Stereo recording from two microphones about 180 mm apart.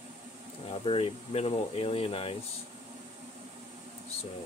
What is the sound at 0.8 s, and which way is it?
Speech, 30° left (ahead or behind).